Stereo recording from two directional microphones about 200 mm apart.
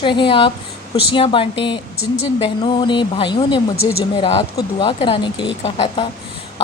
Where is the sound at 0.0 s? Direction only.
25° left (ahead or behind).